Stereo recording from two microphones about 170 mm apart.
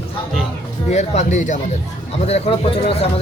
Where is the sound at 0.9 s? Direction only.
40° left (ahead or behind).